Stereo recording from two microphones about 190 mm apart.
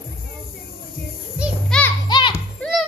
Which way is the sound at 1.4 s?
Centre (ahead or behind).